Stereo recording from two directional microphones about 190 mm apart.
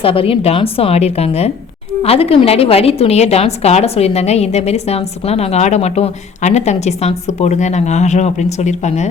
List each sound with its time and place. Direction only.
0.0 s a woman's voice: 30° left (ahead or behind)